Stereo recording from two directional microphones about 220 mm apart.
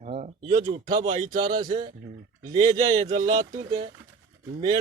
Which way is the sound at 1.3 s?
20° right (ahead or behind).